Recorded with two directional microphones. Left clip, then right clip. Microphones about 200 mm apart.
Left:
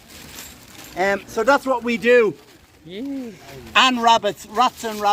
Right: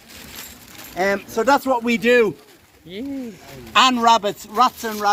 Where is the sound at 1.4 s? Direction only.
60° right (ahead or behind).